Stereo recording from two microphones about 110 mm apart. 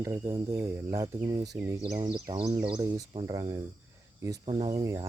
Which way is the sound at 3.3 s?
35° right (ahead or behind).